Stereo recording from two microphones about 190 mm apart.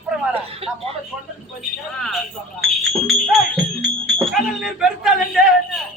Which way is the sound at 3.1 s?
Centre (ahead or behind).